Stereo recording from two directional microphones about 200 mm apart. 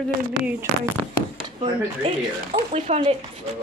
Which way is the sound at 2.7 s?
30° right (ahead or behind).